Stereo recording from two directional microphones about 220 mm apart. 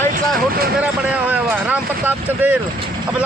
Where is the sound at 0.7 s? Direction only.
5° right (ahead or behind).